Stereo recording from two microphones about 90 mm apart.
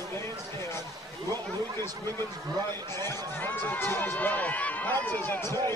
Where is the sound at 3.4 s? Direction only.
25° left (ahead or behind).